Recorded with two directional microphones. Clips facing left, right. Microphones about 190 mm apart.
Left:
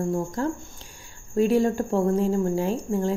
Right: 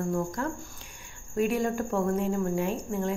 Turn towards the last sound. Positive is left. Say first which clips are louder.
# left 5 dB
turn(degrees=30)  # may be behind; listen again after turning